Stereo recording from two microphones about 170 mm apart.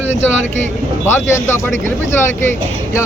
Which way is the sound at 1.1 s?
15° left (ahead or behind).